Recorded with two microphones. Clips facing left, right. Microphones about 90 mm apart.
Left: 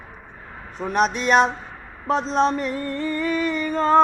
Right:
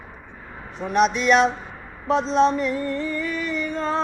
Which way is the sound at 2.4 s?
45° left (ahead or behind).